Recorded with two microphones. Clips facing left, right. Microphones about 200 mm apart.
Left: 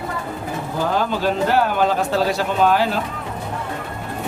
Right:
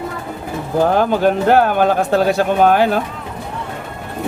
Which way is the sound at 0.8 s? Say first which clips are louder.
Right 7 dB; 55° right (ahead or behind).